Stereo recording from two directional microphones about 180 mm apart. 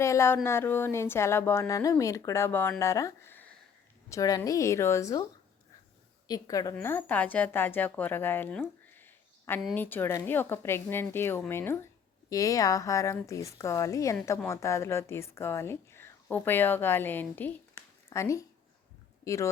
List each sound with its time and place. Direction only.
0.0 s a woman's voice: 15° left (ahead or behind)
6.2 s a woman's voice: 20° left (ahead or behind)